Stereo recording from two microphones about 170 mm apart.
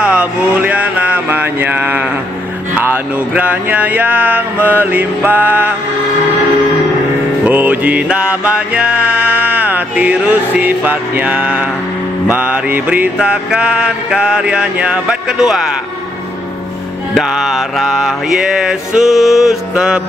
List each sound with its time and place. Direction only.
0.0 s mantra: 5° right (ahead or behind)
2.7 s music: 10° right (ahead or behind)
7.4 s music: 10° right (ahead or behind)
12.3 s mantra: 10° right (ahead or behind)
17.1 s mantra: centre (ahead or behind)